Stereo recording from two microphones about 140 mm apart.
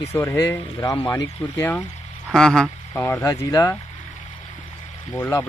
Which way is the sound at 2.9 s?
15° left (ahead or behind).